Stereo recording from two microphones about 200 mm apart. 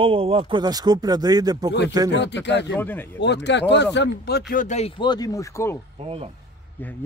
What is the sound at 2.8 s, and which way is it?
Speech, 10° left (ahead or behind).